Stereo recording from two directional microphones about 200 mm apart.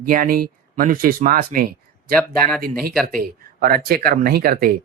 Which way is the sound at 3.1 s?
45° right (ahead or behind).